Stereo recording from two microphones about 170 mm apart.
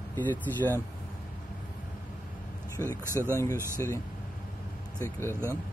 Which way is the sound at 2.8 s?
15° left (ahead or behind).